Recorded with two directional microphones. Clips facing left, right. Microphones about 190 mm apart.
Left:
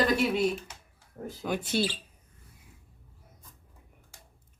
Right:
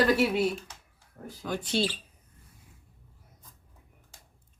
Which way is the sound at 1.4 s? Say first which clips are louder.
Left 2 dB; 15° left (ahead or behind).